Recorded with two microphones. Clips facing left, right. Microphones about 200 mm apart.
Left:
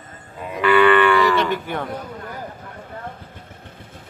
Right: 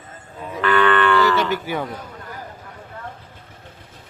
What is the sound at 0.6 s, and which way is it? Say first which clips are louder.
Moo: left 3 dB; 10° left (ahead or behind).